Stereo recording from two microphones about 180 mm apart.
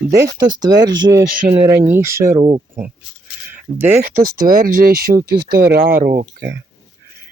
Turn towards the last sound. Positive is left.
turn(degrees=-55)  # may be behind; listen again after turning